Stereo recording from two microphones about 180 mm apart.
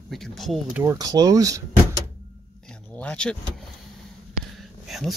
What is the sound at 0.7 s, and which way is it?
Speech, 20° right (ahead or behind).